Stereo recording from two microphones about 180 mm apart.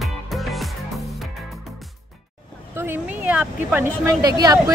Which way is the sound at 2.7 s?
10° right (ahead or behind).